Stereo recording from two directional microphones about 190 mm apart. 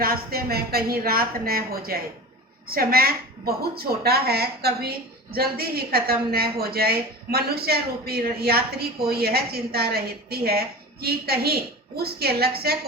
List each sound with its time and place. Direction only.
0.0 s a woman's voice: 50° right (ahead or behind)